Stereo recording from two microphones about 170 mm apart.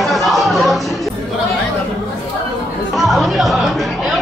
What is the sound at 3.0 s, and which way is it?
Chatter, centre (ahead or behind).